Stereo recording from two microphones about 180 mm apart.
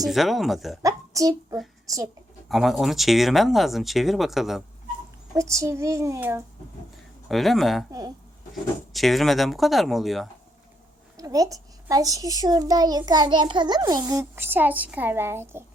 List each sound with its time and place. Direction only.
0.0 s speech: centre (ahead or behind)
0.8 s a sound: 20° right (ahead or behind)
2.5 s speech: centre (ahead or behind)
5.3 s a child's voice: 15° right (ahead or behind)
7.3 s speech: centre (ahead or behind)
7.9 s a child's voice: 20° right (ahead or behind)
8.9 s speech: centre (ahead or behind)
11.2 s a child's voice: 20° right (ahead or behind)